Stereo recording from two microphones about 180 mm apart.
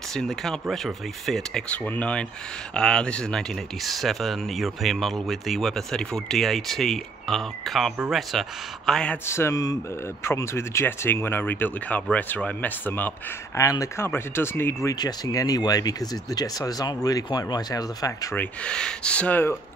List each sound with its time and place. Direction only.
0.1 s speech: centre (ahead or behind)